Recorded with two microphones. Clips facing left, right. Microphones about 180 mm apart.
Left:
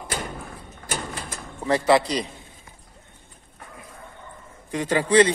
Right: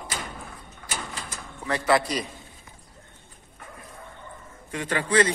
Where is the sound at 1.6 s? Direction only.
30° left (ahead or behind).